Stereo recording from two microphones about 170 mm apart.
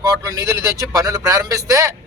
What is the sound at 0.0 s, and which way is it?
Speech, 20° right (ahead or behind).